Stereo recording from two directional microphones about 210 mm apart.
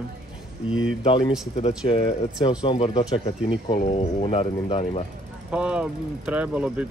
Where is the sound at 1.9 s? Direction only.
25° left (ahead or behind).